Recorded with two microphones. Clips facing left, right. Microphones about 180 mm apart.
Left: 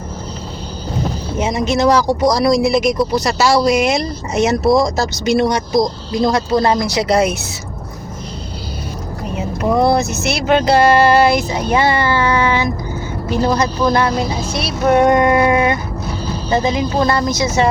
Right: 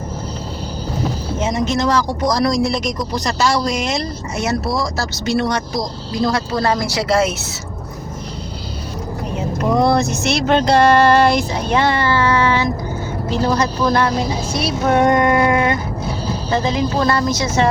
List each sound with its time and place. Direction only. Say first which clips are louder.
1.4 s speech: left 3 dB; 10° left (ahead or behind)
9.7 s speech: left 1 dB; 5° left (ahead or behind)